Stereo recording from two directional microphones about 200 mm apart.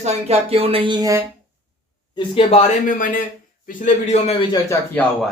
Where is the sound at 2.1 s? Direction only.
30° left (ahead or behind).